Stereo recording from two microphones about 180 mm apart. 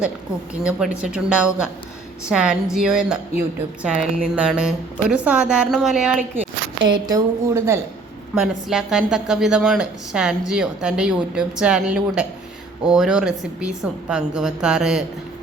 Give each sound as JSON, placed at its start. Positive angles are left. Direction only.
{"t": 0.6, "sound": "a woman's voice", "side_deg": -5}
{"t": 6.7, "sound": "a woman's voice", "side_deg": -25}
{"t": 8.4, "sound": "a woman's voice", "side_deg": -5}